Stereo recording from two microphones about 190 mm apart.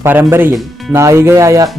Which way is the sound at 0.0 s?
10° right (ahead or behind).